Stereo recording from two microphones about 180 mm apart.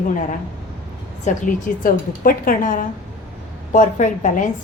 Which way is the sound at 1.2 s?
45° left (ahead or behind).